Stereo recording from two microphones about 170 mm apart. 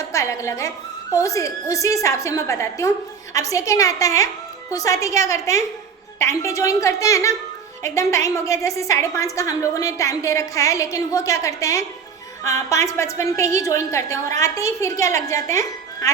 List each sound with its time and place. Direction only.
0.1 s a woman's voice: 20° left (ahead or behind)